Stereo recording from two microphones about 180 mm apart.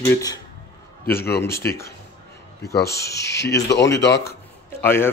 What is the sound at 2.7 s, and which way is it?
Speech, 60° left (ahead or behind).